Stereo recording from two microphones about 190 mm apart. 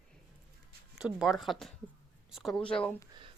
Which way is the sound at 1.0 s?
Centre (ahead or behind).